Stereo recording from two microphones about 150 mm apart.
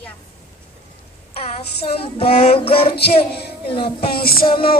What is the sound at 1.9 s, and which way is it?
Child singing, 40° left (ahead or behind).